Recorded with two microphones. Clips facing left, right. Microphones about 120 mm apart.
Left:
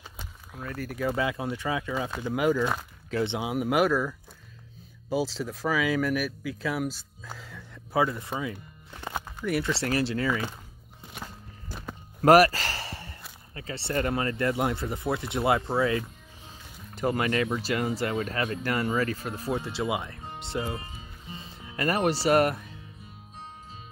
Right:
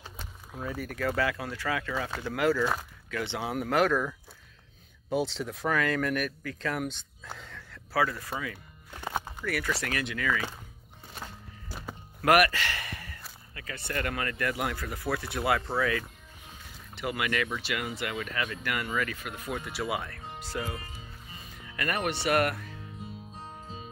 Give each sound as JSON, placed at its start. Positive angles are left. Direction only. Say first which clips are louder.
{"t": 0.6, "sound": "speech", "louder": "right 1 dB", "side_deg": -10}
{"t": 0.8, "sound": "speech", "louder": "left 2 dB", "side_deg": 15}
{"t": 3.1, "sound": "speech", "louder": "left 6 dB", "side_deg": 25}
{"t": 3.3, "sound": "speech", "louder": "even", "side_deg": 10}
{"t": 5.1, "sound": "speech", "louder": "left 1 dB", "side_deg": 0}
{"t": 7.9, "sound": "speech", "louder": "left 2 dB", "side_deg": 20}
{"t": 8.9, "sound": "music", "louder": "right 1 dB", "side_deg": 0}
{"t": 9.4, "sound": "speech", "louder": "left 6 dB", "side_deg": 25}
{"t": 12.2, "sound": "a sound", "louder": "left 5 dB", "side_deg": 35}
{"t": 13.6, "sound": "speech", "louder": "left 5 dB", "side_deg": 30}
{"t": 16.9, "sound": "speech", "louder": "left 5 dB", "side_deg": 40}